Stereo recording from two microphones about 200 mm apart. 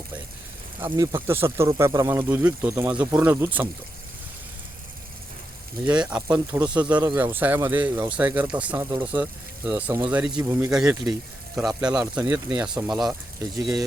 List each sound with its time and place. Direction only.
0.9 s speech: 15° right (ahead or behind)
5.8 s speech: 5° right (ahead or behind)
13.4 s speech: 15° right (ahead or behind)